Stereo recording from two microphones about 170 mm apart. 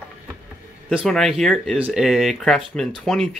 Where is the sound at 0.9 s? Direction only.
Centre (ahead or behind).